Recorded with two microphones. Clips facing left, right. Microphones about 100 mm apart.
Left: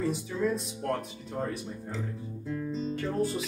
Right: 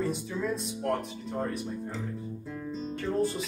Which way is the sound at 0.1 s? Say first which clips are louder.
Left 2 dB; centre (ahead or behind).